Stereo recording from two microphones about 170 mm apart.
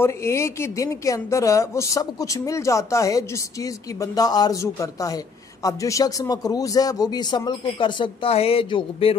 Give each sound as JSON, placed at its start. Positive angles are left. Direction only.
{"t": 0.0, "sound": "speech", "side_deg": 15}